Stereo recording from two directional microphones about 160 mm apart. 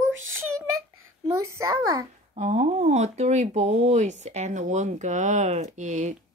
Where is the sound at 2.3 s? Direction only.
45° right (ahead or behind).